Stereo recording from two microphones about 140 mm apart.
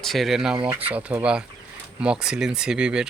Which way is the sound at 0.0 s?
Centre (ahead or behind).